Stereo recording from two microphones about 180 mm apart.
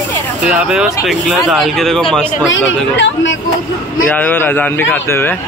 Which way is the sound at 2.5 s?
90° left.